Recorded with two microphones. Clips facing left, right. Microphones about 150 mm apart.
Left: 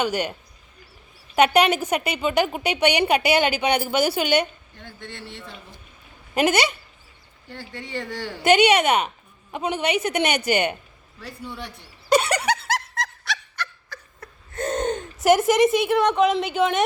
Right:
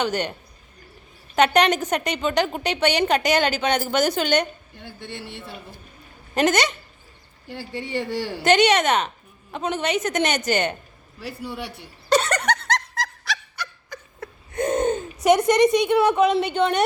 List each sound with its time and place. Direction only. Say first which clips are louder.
0.0 s a woman's voice: even; 10° left (ahead or behind)
1.4 s a woman's voice: even; 10° left (ahead or behind)
4.8 s a man's voice: right 2 dB; 10° right (ahead or behind)
6.3 s a woman's voice: even; 10° left (ahead or behind)
7.4 s a woman's voice: right 5 dB; 5° right (ahead or behind)
8.4 s a woman's voice: left 1 dB; 10° left (ahead or behind)
12.0 s snicker: even; 10° left (ahead or behind)
13.9 s a sound: right 4 dB; 20° right (ahead or behind)
14.5 s gasp: right 3 dB; 10° right (ahead or behind)
15.2 s a woman's voice: even; 5° left (ahead or behind)